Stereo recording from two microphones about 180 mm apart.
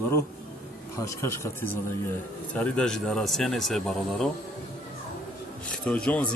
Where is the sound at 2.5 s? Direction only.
5° left (ahead or behind).